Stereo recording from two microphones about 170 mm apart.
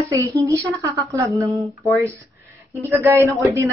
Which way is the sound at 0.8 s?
20° right (ahead or behind).